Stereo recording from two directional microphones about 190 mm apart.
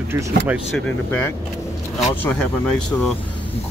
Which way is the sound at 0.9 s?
10° left (ahead or behind).